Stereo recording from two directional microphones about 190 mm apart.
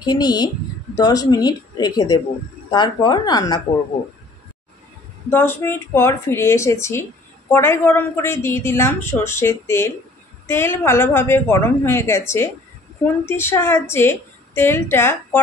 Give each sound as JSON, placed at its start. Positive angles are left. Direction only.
{"t": 0.0, "sound": "speech", "side_deg": 20}
{"t": 5.3, "sound": "speech", "side_deg": 10}